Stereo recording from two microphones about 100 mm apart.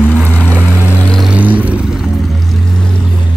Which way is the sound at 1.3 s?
15° right (ahead or behind).